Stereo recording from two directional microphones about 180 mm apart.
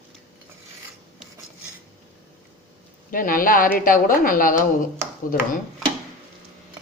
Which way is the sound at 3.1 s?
50° left (ahead or behind).